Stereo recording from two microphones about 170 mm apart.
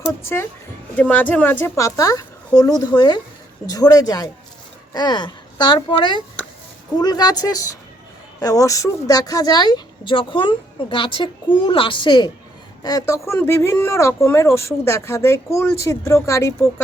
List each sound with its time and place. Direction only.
0.2 s speech: 15° left (ahead or behind)